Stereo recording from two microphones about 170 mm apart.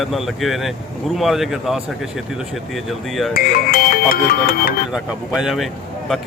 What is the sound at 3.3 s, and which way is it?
Music, 60° left (ahead or behind).